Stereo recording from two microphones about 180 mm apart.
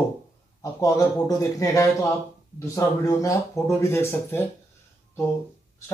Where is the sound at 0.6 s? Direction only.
20° left (ahead or behind).